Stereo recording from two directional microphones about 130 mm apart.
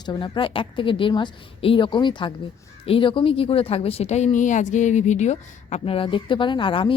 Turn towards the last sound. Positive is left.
turn(degrees=40)  # may be behind; listen again after turning